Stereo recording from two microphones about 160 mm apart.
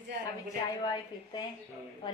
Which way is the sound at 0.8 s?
25° left (ahead or behind).